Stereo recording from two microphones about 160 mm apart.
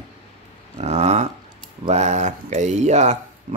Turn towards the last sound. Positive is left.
turn(degrees=-45)  # may be behind; listen again after turning